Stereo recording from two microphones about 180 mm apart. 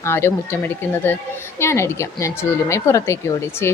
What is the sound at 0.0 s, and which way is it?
Speech, 15° left (ahead or behind).